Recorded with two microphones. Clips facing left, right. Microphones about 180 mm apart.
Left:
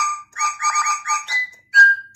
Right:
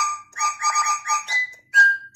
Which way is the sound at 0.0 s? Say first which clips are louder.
Left 2 dB; 15° right (ahead or behind).